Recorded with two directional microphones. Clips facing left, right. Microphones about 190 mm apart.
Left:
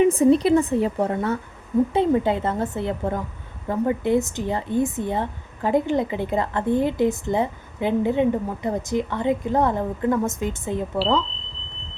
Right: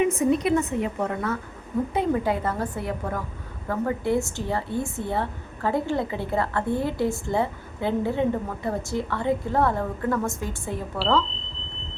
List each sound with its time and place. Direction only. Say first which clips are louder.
0.0 s a woman's voice: left 5 dB; 35° left (ahead or behind)